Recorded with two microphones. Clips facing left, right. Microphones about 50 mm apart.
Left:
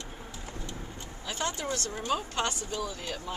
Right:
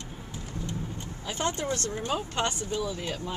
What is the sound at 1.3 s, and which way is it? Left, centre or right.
Speech, right.